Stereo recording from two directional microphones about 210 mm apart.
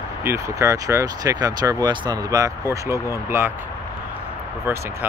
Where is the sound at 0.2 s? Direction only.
10° right (ahead or behind).